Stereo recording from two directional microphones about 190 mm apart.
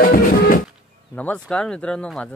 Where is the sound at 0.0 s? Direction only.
50° left (ahead or behind).